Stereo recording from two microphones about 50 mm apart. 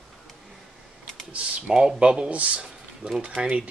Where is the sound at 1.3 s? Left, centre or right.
Right.